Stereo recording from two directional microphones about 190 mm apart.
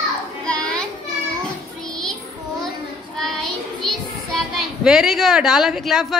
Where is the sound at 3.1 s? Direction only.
Centre (ahead or behind).